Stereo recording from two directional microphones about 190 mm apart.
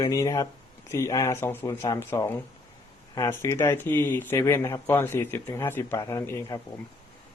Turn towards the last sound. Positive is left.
turn(degrees=15)  # may be behind; listen again after turning